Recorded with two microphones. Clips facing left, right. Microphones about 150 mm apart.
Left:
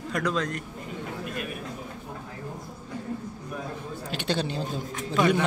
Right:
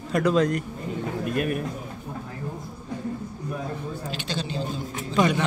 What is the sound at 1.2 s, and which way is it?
Speech, 55° right (ahead or behind).